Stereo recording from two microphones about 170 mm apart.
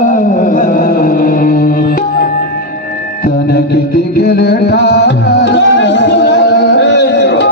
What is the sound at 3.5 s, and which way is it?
Music, 70° left (ahead or behind).